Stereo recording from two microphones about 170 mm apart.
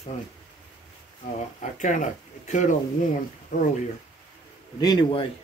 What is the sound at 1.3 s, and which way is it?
Speech, 45° left (ahead or behind).